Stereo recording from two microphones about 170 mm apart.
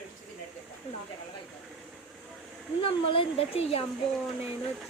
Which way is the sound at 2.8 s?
35° left (ahead or behind).